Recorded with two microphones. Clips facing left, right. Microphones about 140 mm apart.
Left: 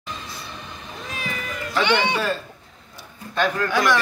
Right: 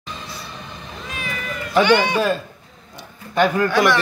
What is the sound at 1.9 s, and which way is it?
Speech, 25° left (ahead or behind).